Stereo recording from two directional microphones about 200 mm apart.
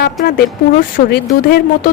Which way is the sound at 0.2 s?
50° left (ahead or behind).